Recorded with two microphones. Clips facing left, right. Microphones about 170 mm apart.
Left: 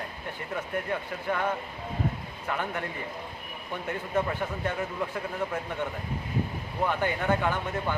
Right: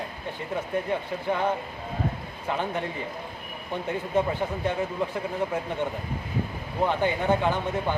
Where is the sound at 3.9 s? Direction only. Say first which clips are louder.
Right 3 dB; 25° right (ahead or behind).